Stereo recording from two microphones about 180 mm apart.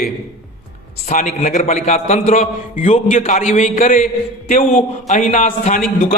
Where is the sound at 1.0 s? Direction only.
50° left (ahead or behind).